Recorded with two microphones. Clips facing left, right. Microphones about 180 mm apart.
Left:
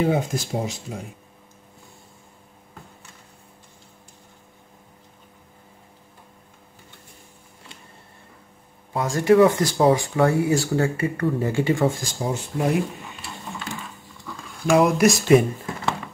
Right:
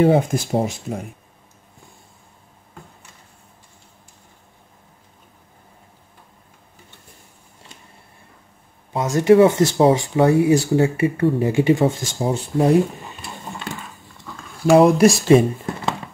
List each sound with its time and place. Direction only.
0.0 s speech: 60° right (ahead or behind)
8.9 s speech: 20° right (ahead or behind)
14.7 s speech: 30° right (ahead or behind)